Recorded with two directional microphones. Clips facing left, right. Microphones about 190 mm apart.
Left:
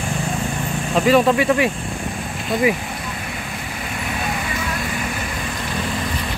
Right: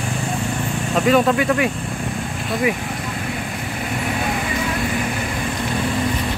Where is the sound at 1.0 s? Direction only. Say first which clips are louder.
Left 1 dB; 5° left (ahead or behind).